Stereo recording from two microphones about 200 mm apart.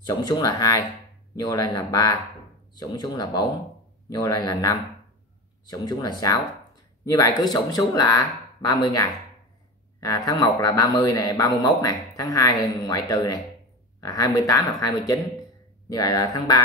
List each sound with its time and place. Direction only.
0.0 s speech: 20° left (ahead or behind)
9.9 s speech: 15° left (ahead or behind)